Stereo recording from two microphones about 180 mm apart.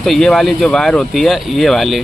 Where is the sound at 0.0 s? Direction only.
Centre (ahead or behind).